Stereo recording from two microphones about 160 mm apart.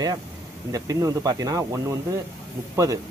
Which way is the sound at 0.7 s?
20° right (ahead or behind).